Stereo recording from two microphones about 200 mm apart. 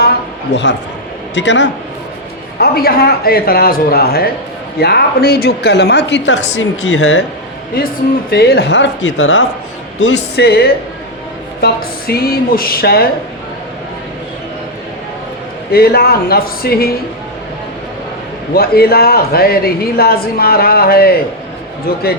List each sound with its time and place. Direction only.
0.5 s a woman's voice: 60° left (ahead or behind)
2.6 s a woman's voice: 50° left (ahead or behind); by 7.2 s 90° left
8.3 s a woman's voice: 50° left (ahead or behind); by 9.4 s 70° left (ahead or behind)
10.3 s speech: 50° left (ahead or behind)
15.7 s speech: 50° left (ahead or behind)
18.5 s speech: 50° left (ahead or behind)